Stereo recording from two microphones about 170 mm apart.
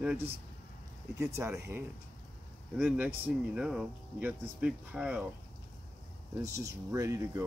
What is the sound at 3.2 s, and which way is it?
Speech, 5° right (ahead or behind).